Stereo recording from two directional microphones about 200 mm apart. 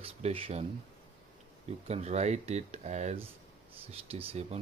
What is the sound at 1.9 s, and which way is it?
Speech, 30° right (ahead or behind).